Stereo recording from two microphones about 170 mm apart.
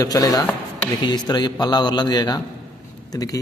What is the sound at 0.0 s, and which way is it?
A man's voice, 20° left (ahead or behind).